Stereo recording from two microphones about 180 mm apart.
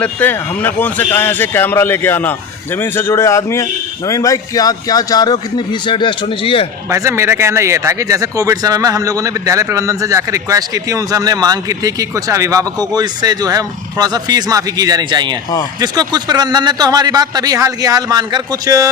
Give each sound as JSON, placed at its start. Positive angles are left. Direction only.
{"t": 0.0, "sound": "a man's voice", "side_deg": 10}
{"t": 6.9, "sound": "speech", "side_deg": -15}